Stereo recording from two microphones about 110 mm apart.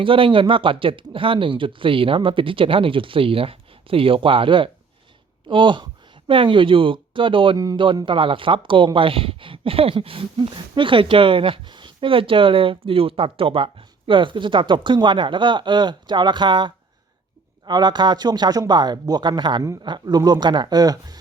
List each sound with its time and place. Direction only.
0.0 s speech: 50° right (ahead or behind)
7.5 s speech: 35° right (ahead or behind)
8.0 s speech: 50° right (ahead or behind); by 21.2 s 35° right (ahead or behind)